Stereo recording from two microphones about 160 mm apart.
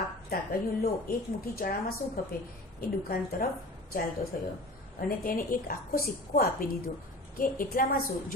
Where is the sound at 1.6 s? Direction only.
70° left (ahead or behind).